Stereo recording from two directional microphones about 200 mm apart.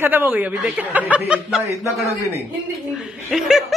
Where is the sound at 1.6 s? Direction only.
15° left (ahead or behind).